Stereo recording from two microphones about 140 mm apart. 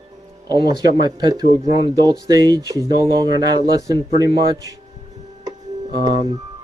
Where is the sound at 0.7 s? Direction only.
30° right (ahead or behind).